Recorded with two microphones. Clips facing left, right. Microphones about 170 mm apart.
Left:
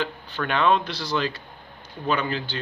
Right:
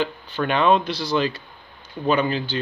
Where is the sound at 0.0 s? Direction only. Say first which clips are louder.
Right 4 dB; 15° right (ahead or behind).